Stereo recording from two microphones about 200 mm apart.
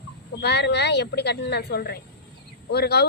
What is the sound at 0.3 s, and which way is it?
A woman's voice, 60° left (ahead or behind).